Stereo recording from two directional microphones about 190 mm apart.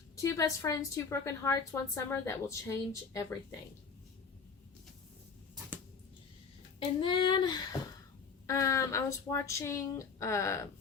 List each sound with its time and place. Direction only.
0.2 s a woman's voice: 15° left (ahead or behind)
6.7 s a woman's voice: 25° left (ahead or behind)